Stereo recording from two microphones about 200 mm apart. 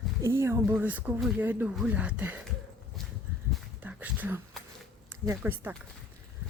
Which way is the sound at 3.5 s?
10° right (ahead or behind).